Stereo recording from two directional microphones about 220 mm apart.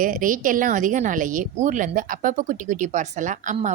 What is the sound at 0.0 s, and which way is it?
A woman's voice, 40° right (ahead or behind).